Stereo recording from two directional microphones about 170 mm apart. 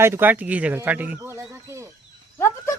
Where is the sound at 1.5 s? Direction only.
15° right (ahead or behind).